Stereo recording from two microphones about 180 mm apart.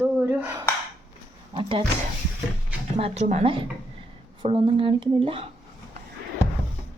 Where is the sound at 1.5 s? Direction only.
30° right (ahead or behind).